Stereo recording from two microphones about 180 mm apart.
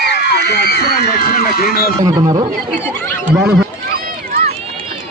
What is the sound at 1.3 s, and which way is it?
Speech, 55° left (ahead or behind).